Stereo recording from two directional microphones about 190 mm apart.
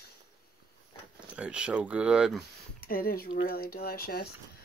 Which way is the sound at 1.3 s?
5° right (ahead or behind).